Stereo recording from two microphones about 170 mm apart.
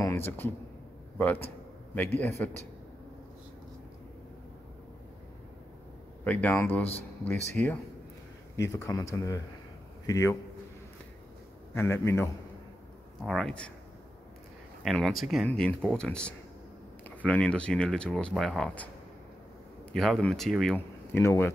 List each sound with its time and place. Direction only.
0.0 s a sound: 15° left (ahead or behind)
1.1 s speech: 10° left (ahead or behind)
6.2 s a man's voice: 10° left (ahead or behind)
11.7 s speech: 15° left (ahead or behind)
13.2 s speech: centre (ahead or behind)
14.8 s speech: centre (ahead or behind)
19.9 s speech: 5° left (ahead or behind)